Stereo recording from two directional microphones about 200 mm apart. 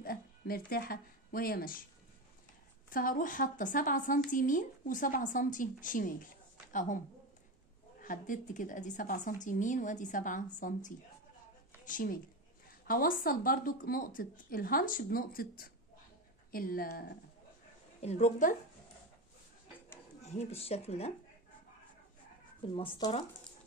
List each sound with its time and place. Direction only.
0.0 s speech: 45° left (ahead or behind)
2.9 s a woman's voice: 45° left (ahead or behind)
8.0 s a woman's voice: 40° left (ahead or behind)
18.0 s a woman's voice: 35° left (ahead or behind)
20.2 s speech: 35° left (ahead or behind)
22.8 s speech: 25° left (ahead or behind)